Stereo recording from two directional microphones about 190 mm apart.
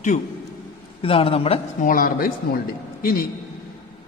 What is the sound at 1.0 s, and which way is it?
Speech, 30° left (ahead or behind).